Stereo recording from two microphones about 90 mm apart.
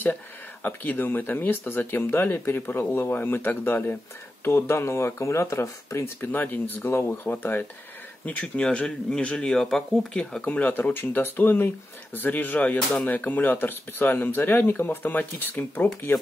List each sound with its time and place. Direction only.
0.0 s speech: 20° left (ahead or behind)
6.3 s speech: 20° left (ahead or behind)
8.3 s speech: 15° left (ahead or behind)